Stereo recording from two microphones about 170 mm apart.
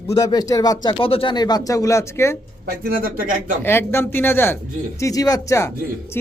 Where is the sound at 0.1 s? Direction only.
20° left (ahead or behind).